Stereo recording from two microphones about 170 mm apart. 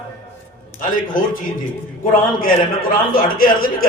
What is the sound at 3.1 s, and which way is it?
Speech, 55° left (ahead or behind).